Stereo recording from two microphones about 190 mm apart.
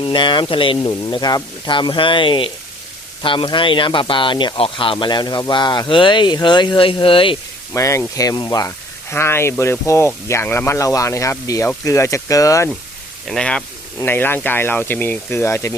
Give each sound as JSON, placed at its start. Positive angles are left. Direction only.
{"t": 0.0, "sound": "speech", "side_deg": 25}
{"t": 7.7, "sound": "speech", "side_deg": 15}
{"t": 13.2, "sound": "speech", "side_deg": 5}